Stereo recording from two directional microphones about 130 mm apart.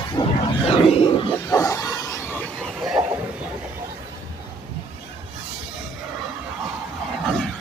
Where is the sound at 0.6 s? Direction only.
50° left (ahead or behind).